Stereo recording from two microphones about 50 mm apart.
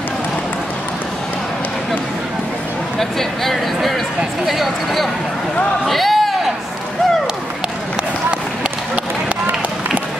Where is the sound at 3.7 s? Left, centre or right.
Centre.